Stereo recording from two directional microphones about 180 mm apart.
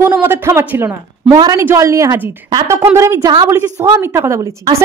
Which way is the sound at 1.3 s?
25° right (ahead or behind).